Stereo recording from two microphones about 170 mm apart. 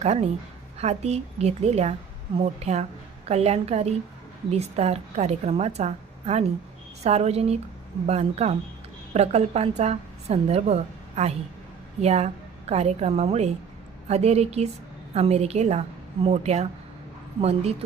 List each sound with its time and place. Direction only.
0.0 s a woman's voice: 40° right (ahead or behind)